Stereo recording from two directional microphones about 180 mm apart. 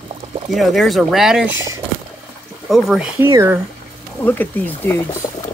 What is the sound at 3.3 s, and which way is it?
Speech, 15° right (ahead or behind).